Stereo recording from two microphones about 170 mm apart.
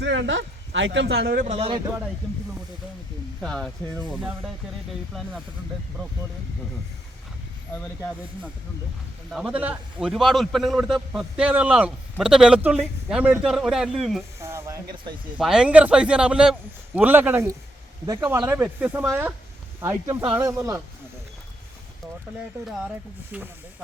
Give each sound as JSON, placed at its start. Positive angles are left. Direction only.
{"t": 0.0, "sound": "speech", "side_deg": -90}
{"t": 1.5, "sound": "speech", "side_deg": -35}
{"t": 3.4, "sound": "a man's voice", "side_deg": 5}
{"t": 5.1, "sound": "a man's voice", "side_deg": 0}
{"t": 9.3, "sound": "a man's voice", "side_deg": -5}
{"t": 14.4, "sound": "speech", "side_deg": -15}
{"t": 15.4, "sound": "a man's voice", "side_deg": -5}
{"t": 18.3, "sound": "speech", "side_deg": -10}
{"t": 23.3, "sound": "speech", "side_deg": -10}